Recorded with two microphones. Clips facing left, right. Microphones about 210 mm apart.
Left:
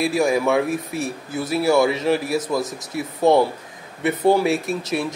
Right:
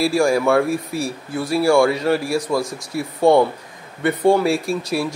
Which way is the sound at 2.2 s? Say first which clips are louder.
Right 1 dB; 20° left (ahead or behind).